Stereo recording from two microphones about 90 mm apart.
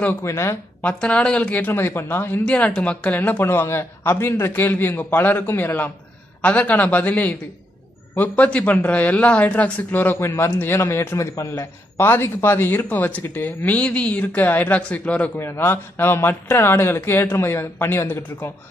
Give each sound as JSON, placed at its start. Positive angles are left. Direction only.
{"t": 0.2, "sound": "a woman's voice", "side_deg": 30}
{"t": 0.8, "sound": "speech", "side_deg": 15}
{"t": 1.7, "sound": "a man's voice", "side_deg": 25}
{"t": 15.3, "sound": "a man's voice", "side_deg": 25}